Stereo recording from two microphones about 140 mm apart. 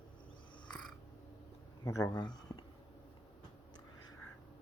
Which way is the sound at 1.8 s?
25° left (ahead or behind).